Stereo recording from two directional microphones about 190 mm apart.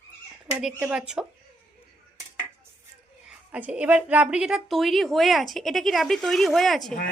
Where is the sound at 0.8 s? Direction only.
5° right (ahead or behind).